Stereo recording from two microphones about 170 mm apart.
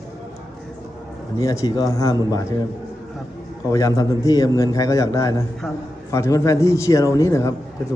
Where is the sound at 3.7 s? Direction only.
20° left (ahead or behind).